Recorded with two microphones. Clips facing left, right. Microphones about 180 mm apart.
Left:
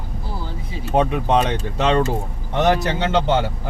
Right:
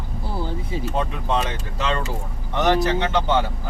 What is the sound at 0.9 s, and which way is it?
Speech, 70° left (ahead or behind).